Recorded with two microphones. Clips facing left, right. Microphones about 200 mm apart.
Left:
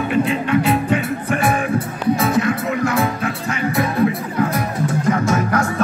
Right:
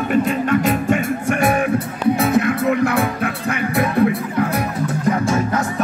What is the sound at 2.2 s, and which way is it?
Music, 55° right (ahead or behind).